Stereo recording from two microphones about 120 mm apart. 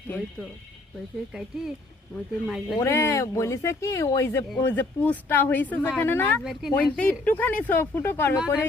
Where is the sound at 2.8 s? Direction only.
25° left (ahead or behind).